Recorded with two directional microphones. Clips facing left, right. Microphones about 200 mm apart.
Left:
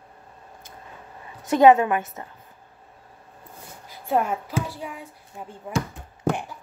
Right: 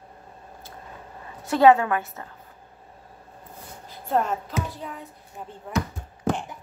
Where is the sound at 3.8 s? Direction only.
10° left (ahead or behind).